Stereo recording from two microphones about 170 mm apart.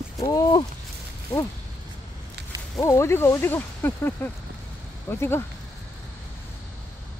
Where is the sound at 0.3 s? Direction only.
20° left (ahead or behind).